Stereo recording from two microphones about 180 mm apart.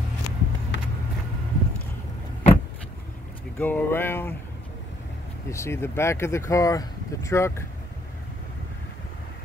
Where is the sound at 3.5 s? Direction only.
10° left (ahead or behind).